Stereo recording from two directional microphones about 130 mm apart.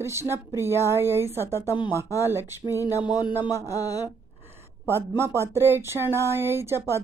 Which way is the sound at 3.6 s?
25° left (ahead or behind).